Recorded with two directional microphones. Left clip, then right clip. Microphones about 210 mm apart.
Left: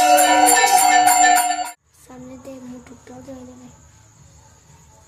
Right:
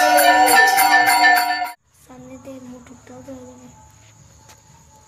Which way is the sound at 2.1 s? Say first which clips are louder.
Left 2 dB; 10° left (ahead or behind).